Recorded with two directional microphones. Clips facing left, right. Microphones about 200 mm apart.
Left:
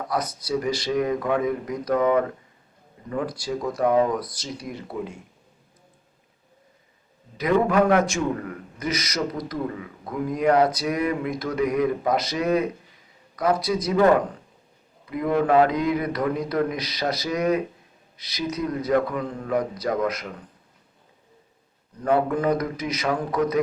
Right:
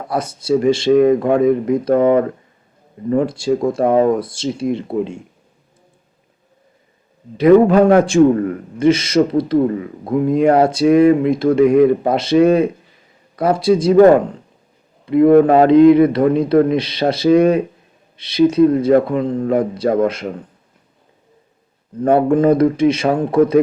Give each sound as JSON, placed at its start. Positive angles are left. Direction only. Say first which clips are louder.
{"t": 0.1, "sound": "speech", "louder": "right 10 dB", "side_deg": -25}
{"t": 7.7, "sound": "a man's voice", "louder": "right 8 dB", "side_deg": -30}
{"t": 15.2, "sound": "speech", "louder": "right 14 dB", "side_deg": -55}
{"t": 15.4, "sound": "speech", "louder": "right 11 dB", "side_deg": -30}
{"t": 22.3, "sound": "speech", "louder": "right 11 dB", "side_deg": -30}